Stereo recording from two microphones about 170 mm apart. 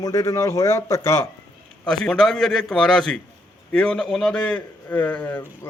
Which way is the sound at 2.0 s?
Centre (ahead or behind).